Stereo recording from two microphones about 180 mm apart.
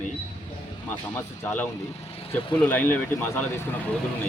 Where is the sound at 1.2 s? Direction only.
10° left (ahead or behind).